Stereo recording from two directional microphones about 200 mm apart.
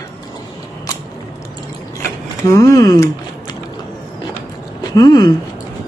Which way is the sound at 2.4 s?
15° left (ahead or behind).